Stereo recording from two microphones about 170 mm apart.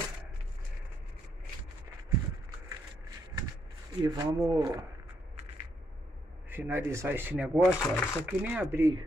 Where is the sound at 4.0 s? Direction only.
25° right (ahead or behind).